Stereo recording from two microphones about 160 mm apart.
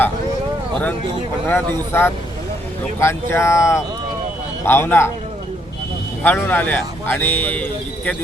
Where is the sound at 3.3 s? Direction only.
15° left (ahead or behind).